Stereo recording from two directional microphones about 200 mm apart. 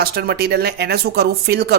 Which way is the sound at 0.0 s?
50° right (ahead or behind).